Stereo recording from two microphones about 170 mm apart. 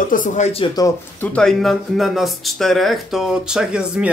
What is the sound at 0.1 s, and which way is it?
Speech, 50° left (ahead or behind).